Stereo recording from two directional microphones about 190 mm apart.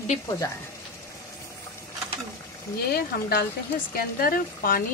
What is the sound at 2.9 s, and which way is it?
A woman's voice, 55° left (ahead or behind).